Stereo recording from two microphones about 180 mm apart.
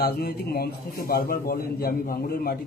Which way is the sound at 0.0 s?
55° left (ahead or behind).